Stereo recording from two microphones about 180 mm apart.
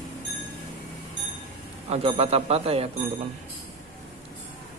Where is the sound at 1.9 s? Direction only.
35° right (ahead or behind).